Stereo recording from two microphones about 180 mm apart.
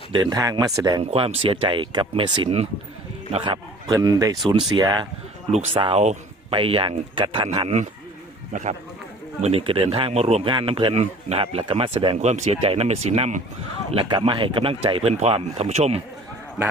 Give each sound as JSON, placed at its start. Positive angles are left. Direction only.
{"t": 0.1, "sound": "speech", "side_deg": -25}
{"t": 8.5, "sound": "a man's voice", "side_deg": -45}
{"t": 9.4, "sound": "a man's voice", "side_deg": -35}
{"t": 13.9, "sound": "a man's voice", "side_deg": -25}